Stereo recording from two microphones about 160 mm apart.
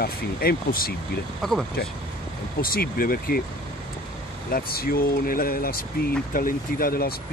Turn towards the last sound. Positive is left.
turn(degrees=70)  # may be behind; listen again after turning